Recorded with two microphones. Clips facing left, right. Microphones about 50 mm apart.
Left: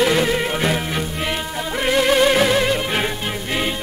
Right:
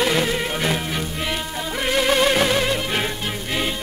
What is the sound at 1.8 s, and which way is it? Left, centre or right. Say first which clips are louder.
Music: left 3 dB; centre.